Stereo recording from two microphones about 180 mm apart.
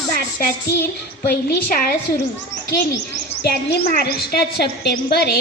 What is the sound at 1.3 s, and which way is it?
Speech, 55° left (ahead or behind).